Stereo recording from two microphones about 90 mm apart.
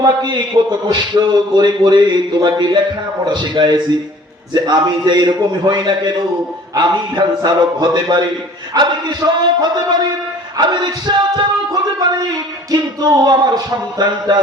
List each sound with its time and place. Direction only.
0.0 s a man's voice: 50° right (ahead or behind)
10.6 s a sound: 55° right (ahead or behind)
12.7 s a man's voice: 50° right (ahead or behind)